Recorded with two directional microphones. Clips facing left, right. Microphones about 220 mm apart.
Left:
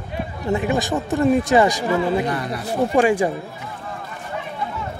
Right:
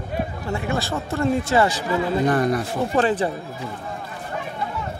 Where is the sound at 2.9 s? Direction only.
10° left (ahead or behind).